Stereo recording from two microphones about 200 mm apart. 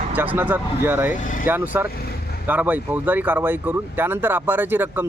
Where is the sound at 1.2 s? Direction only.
40° left (ahead or behind).